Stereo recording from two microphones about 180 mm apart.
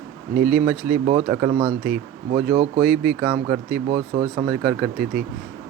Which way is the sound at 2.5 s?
60° right (ahead or behind).